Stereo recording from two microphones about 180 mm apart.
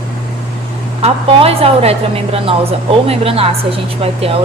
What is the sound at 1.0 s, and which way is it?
Speech, 35° right (ahead or behind).